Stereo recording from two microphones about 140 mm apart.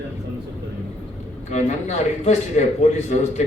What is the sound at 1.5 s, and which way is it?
A man's voice, 55° left (ahead or behind).